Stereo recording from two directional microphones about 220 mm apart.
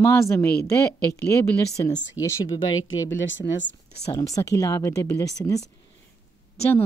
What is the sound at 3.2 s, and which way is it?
Speech, 60° left (ahead or behind).